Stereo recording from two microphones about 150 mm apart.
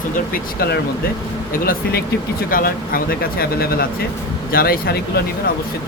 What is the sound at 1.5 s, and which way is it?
Speech, 75° left (ahead or behind).